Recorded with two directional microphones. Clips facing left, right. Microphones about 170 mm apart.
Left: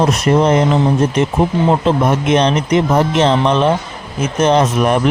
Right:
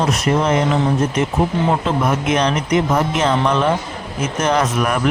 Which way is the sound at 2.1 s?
25° left (ahead or behind).